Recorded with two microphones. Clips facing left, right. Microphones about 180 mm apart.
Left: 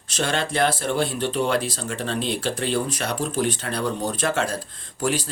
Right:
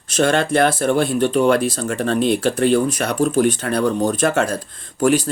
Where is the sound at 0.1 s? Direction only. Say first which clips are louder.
Right 8 dB; 50° right (ahead or behind).